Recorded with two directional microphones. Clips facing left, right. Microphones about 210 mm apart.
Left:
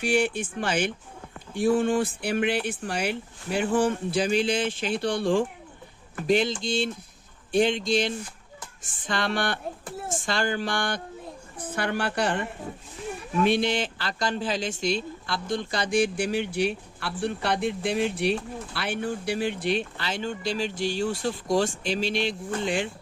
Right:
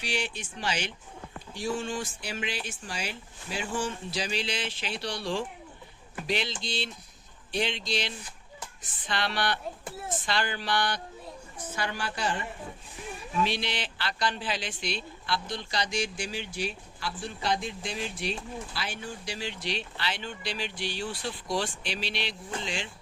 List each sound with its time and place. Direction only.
0.0 s speech: 50° left (ahead or behind)